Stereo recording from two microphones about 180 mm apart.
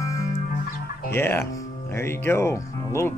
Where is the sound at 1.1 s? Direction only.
15° left (ahead or behind).